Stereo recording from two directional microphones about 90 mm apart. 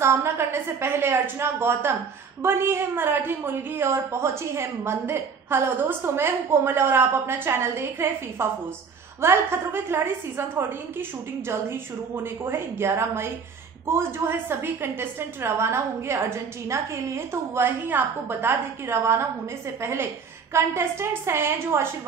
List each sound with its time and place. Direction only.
0.0 s a woman's voice: 30° right (ahead or behind)